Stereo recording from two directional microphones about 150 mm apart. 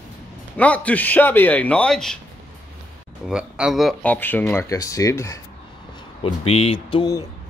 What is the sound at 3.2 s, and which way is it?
Speech, 5° right (ahead or behind).